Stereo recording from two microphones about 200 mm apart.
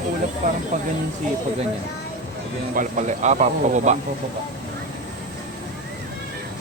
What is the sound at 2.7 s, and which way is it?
Speech, 40° right (ahead or behind).